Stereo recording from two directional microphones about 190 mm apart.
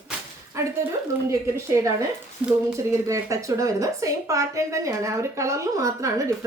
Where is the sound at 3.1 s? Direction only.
15° right (ahead or behind).